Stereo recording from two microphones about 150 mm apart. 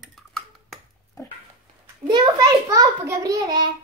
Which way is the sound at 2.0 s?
25° right (ahead or behind).